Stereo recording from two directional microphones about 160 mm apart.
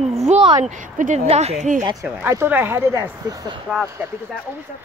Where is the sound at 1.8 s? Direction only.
20° right (ahead or behind).